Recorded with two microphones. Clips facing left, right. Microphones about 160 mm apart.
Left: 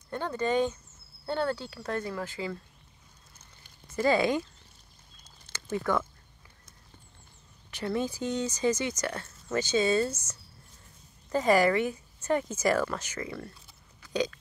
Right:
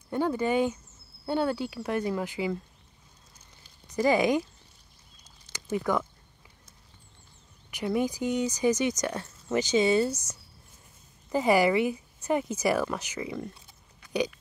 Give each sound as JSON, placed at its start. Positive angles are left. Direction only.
{"t": 0.1, "sound": "speech", "side_deg": -10}
{"t": 3.8, "sound": "speech", "side_deg": -15}
{"t": 5.5, "sound": "speech", "side_deg": -15}
{"t": 7.7, "sound": "speech", "side_deg": -15}